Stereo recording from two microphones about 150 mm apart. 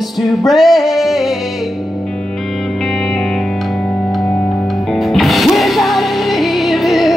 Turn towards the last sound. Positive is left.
turn(degrees=0)  # may be behind; listen again after turning